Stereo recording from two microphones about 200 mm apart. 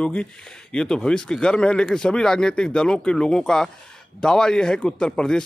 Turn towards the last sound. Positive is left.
turn(degrees=5)  # may be behind; listen again after turning